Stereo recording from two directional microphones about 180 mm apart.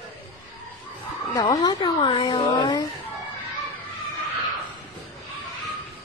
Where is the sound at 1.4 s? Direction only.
20° left (ahead or behind).